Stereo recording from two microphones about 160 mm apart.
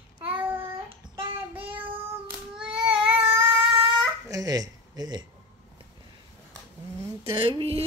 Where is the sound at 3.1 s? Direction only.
35° right (ahead or behind).